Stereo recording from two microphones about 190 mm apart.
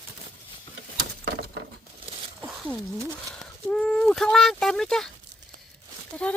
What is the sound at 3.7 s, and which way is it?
Speech, 5° left (ahead or behind).